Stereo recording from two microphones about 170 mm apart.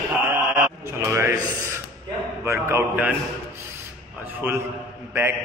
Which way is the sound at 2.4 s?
15° right (ahead or behind).